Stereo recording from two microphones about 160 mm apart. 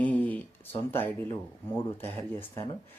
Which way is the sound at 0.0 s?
10° left (ahead or behind).